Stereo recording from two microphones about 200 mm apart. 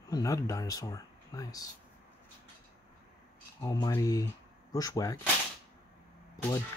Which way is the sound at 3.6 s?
20° left (ahead or behind).